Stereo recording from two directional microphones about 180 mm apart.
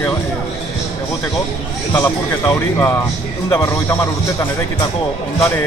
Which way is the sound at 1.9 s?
20° left (ahead or behind).